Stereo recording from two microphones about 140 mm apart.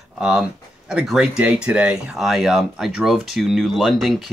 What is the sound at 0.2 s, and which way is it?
Speech, 5° right (ahead or behind).